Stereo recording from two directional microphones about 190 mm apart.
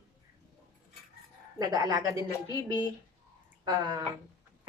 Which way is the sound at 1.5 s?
20° right (ahead or behind).